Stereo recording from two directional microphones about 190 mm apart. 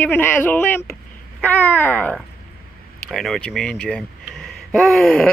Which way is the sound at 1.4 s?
10° left (ahead or behind).